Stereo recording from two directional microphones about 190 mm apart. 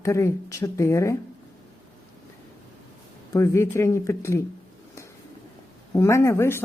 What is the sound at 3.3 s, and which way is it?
A woman's voice, 15° left (ahead or behind).